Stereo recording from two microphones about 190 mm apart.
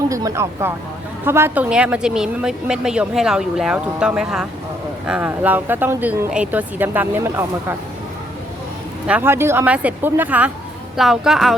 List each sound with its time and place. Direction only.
0.1 s a woman's voice: 20° right (ahead or behind)
9.0 s a woman's voice: 10° right (ahead or behind)